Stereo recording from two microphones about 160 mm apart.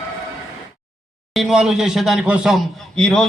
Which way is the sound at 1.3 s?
Centre (ahead or behind).